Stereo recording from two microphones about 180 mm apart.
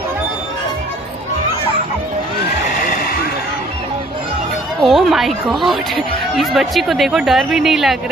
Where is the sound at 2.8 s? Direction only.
50° left (ahead or behind).